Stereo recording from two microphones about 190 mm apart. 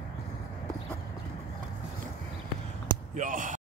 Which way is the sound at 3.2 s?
45° right (ahead or behind).